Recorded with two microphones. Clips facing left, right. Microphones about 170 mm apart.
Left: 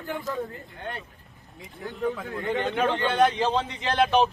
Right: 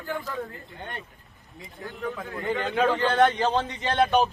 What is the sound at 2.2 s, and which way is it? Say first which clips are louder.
A man's voice: left 1 dB; 5° left (ahead or behind).